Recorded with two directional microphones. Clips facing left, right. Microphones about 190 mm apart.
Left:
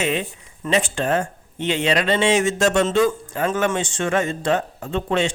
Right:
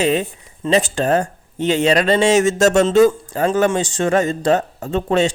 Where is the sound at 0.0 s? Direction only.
40° right (ahead or behind).